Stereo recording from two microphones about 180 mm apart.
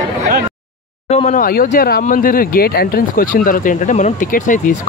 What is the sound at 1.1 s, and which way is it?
Speech, 40° left (ahead or behind).